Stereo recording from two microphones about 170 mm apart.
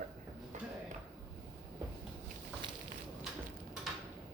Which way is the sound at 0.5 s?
45° right (ahead or behind).